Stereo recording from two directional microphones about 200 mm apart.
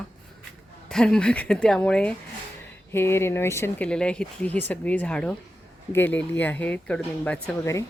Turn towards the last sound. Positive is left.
turn(degrees=15)  # may be behind; listen again after turning